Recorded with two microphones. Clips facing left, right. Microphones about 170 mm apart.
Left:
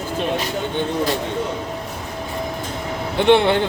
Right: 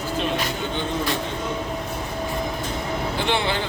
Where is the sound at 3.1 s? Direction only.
60° left (ahead or behind).